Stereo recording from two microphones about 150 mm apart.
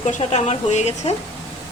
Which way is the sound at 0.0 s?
50° left (ahead or behind).